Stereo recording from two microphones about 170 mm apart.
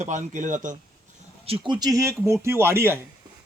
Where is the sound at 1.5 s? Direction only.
35° right (ahead or behind).